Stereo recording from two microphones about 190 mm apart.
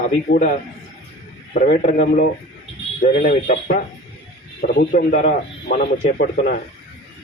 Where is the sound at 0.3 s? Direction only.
70° left (ahead or behind).